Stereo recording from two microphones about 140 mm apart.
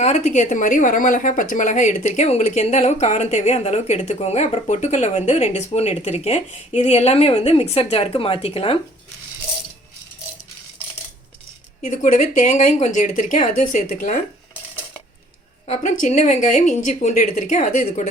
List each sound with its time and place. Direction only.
0.0 s speech: 55° left (ahead or behind)
11.9 s a woman's voice: 65° left (ahead or behind)
15.6 s a woman's voice: 55° left (ahead or behind)